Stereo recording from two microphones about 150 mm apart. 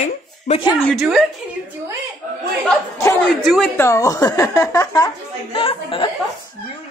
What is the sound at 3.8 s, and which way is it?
Speech, 20° left (ahead or behind).